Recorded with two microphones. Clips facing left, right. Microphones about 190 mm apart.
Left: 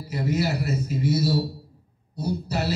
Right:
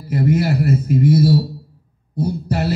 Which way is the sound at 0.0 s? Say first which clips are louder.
Right 7 dB; 55° right (ahead or behind).